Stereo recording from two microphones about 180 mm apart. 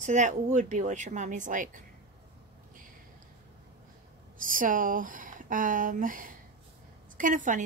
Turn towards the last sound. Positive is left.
turn(degrees=-45)  # may be behind; listen again after turning